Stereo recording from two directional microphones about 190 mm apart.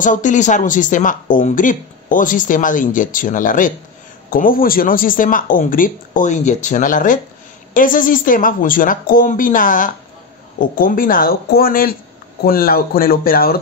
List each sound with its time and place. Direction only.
0.0 s speech: 40° left (ahead or behind)